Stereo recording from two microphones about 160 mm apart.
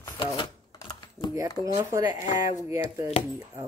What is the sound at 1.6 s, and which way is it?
Speech, 20° right (ahead or behind).